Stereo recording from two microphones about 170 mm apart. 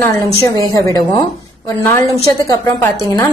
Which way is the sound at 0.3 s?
35° right (ahead or behind).